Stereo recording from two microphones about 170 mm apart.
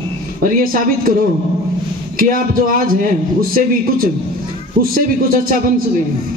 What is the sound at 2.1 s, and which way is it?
Speech, 55° right (ahead or behind).